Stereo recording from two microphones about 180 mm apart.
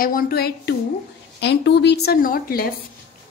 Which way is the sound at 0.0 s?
55° left (ahead or behind).